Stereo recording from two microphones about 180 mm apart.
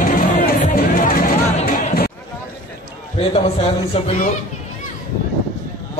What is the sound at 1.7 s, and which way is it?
Chatter, 50° left (ahead or behind).